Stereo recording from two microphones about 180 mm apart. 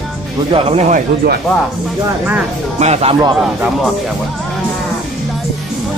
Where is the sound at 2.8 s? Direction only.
35° right (ahead or behind).